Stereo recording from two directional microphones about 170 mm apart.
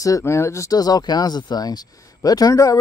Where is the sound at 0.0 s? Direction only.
20° left (ahead or behind).